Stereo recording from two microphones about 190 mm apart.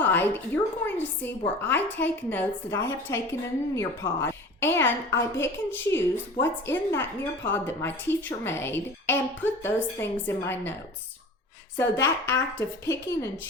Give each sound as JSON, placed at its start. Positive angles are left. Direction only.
{"t": 0.0, "sound": "a woman's voice", "side_deg": 10}
{"t": 11.8, "sound": "a woman's voice", "side_deg": 15}